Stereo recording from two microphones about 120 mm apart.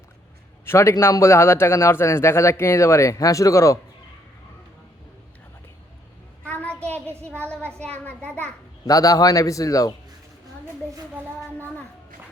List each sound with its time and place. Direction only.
0.6 s a man's voice: 20° left (ahead or behind)
6.4 s a sound: 10° left (ahead or behind)
7.2 s speech: 10° left (ahead or behind)
8.9 s a man's voice: 30° left (ahead or behind)